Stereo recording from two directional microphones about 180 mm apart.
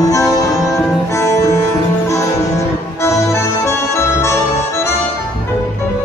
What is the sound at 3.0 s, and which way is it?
Accordion, 15° left (ahead or behind).